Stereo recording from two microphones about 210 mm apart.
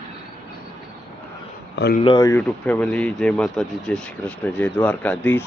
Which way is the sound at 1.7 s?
50° left (ahead or behind).